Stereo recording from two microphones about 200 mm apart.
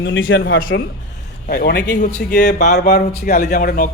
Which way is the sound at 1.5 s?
50° left (ahead or behind).